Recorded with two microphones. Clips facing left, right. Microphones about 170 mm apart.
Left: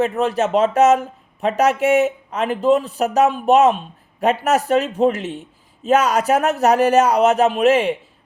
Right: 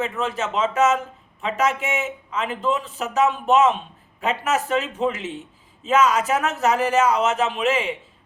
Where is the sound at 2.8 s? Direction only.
40° left (ahead or behind).